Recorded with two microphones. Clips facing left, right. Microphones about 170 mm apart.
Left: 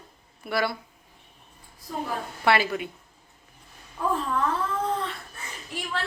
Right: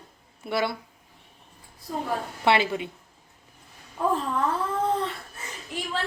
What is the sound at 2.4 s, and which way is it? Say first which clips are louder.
Speech: even; 20° right (ahead or behind).